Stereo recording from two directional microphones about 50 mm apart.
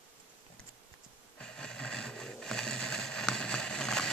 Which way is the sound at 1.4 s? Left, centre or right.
Centre.